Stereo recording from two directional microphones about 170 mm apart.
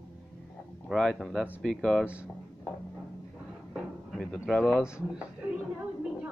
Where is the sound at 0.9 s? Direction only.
Centre (ahead or behind).